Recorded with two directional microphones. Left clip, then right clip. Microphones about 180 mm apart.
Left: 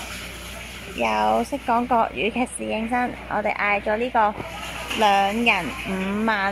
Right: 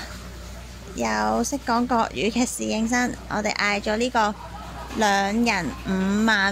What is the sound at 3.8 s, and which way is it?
Speech, 40° right (ahead or behind).